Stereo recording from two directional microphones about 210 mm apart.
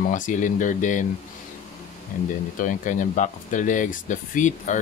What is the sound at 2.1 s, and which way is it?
Speech, 40° left (ahead or behind).